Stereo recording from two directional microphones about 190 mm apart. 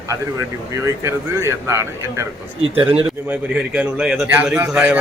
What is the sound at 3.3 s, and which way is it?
Speech, 10° right (ahead or behind).